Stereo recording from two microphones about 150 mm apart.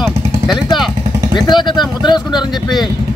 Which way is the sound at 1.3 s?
30° left (ahead or behind).